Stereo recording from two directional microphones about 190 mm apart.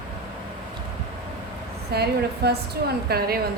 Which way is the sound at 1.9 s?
60° right (ahead or behind).